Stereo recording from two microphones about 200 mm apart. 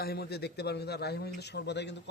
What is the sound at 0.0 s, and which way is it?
A man's voice, 50° left (ahead or behind).